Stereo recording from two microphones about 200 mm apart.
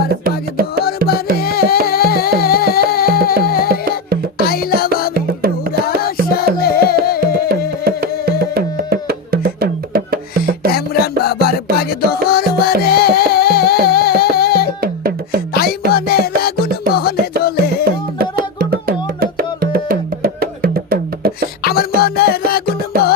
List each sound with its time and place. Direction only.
0.1 s music: 50° right (ahead or behind)
1.0 s music: 50° left (ahead or behind)
6.3 s music: 50° left (ahead or behind)
7.9 s music: 50° right (ahead or behind)
10.7 s music: 50° left (ahead or behind)
14.8 s music: 50° right (ahead or behind)
15.9 s music: 50° left (ahead or behind)
18.2 s music: 50° right (ahead or behind)
21.6 s music: 50° left (ahead or behind)